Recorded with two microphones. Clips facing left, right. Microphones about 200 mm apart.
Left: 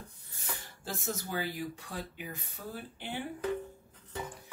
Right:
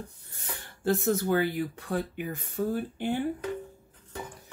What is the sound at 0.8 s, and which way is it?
Speech, 60° right (ahead or behind).